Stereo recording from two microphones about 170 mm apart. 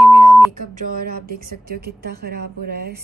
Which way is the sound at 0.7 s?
60° right (ahead or behind).